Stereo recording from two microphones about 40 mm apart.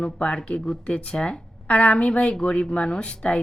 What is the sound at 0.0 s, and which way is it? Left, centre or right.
Speech, left.